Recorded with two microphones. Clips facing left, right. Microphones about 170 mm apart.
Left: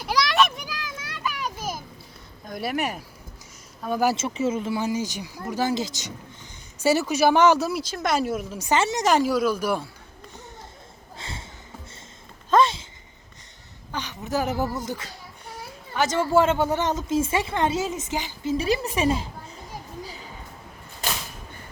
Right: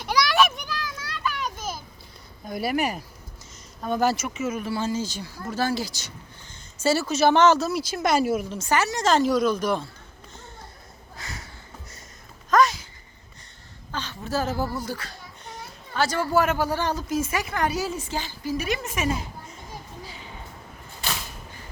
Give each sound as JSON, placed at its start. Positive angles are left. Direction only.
{"t": 0.0, "sound": "children playing", "side_deg": 0}
{"t": 0.7, "sound": "children playing", "side_deg": 20}
{"t": 2.5, "sound": "speech", "side_deg": 0}
{"t": 4.4, "sound": "speech", "side_deg": 25}
{"t": 7.8, "sound": "speech", "side_deg": -5}
{"t": 8.5, "sound": "speech", "side_deg": 20}
{"t": 11.2, "sound": "sniff", "side_deg": 25}
{"t": 12.5, "sound": "a sound", "side_deg": 25}
{"t": 13.9, "sound": "speech", "side_deg": 15}
{"t": 15.4, "sound": "a sound", "side_deg": 10}
{"t": 16.0, "sound": "a woman's voice", "side_deg": 25}
{"t": 18.5, "sound": "a woman's voice", "side_deg": 30}